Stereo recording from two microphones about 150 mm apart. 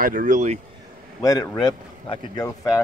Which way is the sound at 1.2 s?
25° left (ahead or behind).